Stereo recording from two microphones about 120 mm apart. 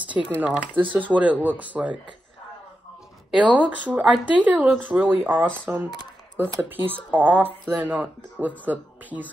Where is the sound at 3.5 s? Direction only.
10° right (ahead or behind).